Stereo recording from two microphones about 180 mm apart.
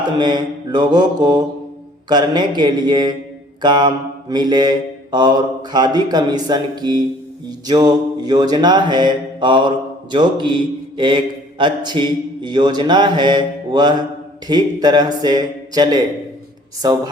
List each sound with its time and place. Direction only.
0.2 s mantra: 25° right (ahead or behind)
5.7 s mantra: 25° right (ahead or behind)